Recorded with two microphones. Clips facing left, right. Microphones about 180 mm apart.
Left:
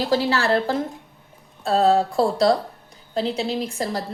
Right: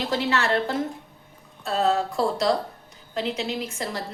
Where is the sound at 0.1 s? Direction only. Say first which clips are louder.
Left 3 dB; 35° left (ahead or behind).